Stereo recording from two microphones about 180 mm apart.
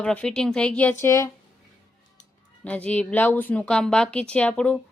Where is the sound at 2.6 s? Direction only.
5° left (ahead or behind).